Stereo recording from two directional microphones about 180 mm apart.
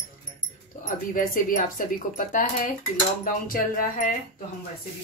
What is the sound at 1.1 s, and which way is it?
Speech, 50° left (ahead or behind).